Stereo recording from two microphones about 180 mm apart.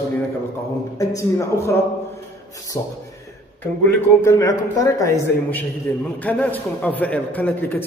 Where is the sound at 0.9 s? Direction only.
15° left (ahead or behind).